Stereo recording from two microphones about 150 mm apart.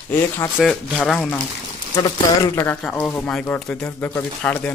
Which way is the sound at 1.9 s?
20° left (ahead or behind).